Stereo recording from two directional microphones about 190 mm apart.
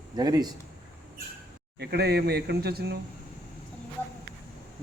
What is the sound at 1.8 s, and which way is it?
Speech, 60° right (ahead or behind).